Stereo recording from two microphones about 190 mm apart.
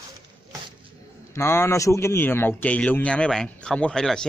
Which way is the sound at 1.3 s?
15° left (ahead or behind).